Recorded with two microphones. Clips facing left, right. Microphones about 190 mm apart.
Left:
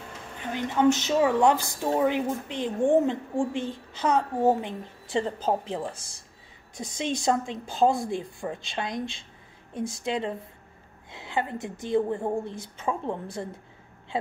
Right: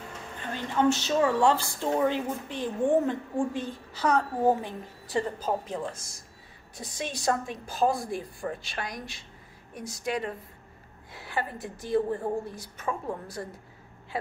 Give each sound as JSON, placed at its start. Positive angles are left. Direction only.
{"t": 0.4, "sound": "a woman's voice", "side_deg": 15}